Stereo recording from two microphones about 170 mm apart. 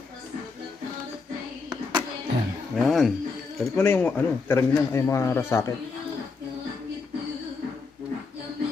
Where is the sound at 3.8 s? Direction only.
10° left (ahead or behind).